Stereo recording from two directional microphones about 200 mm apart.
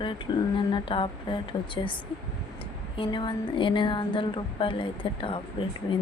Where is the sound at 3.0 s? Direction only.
25° left (ahead or behind).